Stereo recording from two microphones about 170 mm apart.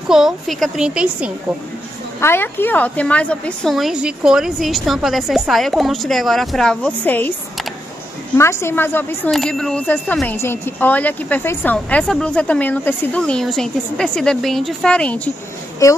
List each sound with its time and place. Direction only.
0.1 s a woman's voice: centre (ahead or behind)
2.1 s a woman's voice: 15° left (ahead or behind)
8.4 s speech: 15° left (ahead or behind)
15.8 s a woman's voice: 20° left (ahead or behind)